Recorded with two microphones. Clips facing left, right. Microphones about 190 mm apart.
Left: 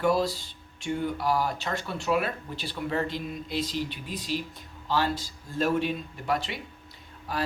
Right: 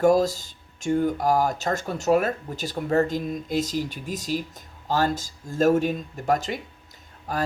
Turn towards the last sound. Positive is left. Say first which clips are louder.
# right 3 dB
turn(degrees=-45)  # may be behind; listen again after turning